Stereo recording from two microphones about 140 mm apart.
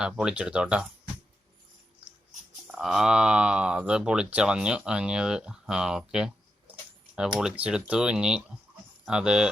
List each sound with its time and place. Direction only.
0.0 s speech: 5° right (ahead or behind)
2.7 s speech: 5° right (ahead or behind)